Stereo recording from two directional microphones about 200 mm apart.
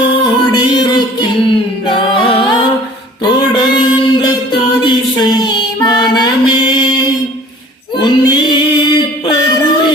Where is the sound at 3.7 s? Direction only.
20° left (ahead or behind).